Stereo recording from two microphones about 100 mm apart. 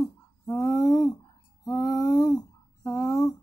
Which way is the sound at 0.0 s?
30° left (ahead or behind).